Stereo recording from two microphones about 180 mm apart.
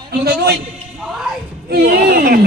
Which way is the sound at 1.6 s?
60° right (ahead or behind).